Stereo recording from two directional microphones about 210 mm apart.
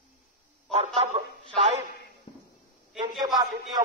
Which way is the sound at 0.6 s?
30° right (ahead or behind).